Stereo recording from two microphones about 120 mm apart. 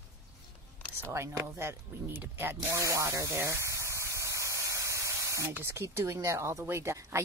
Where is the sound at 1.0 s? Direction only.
25° right (ahead or behind).